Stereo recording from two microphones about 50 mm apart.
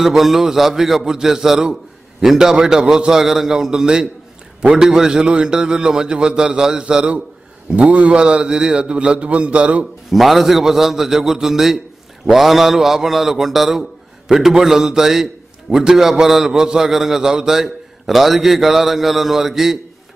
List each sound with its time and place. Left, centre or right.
0.0 s a man's voice: centre
7.7 s a man's voice: right
10.1 s a man's voice: centre